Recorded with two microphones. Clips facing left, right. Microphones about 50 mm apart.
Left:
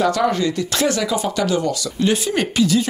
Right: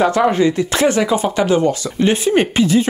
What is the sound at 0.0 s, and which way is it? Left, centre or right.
Speech, right.